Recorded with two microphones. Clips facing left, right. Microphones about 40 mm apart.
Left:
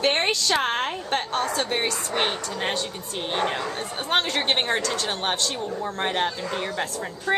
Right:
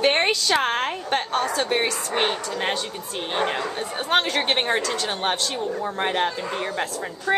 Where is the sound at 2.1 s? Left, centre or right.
Centre.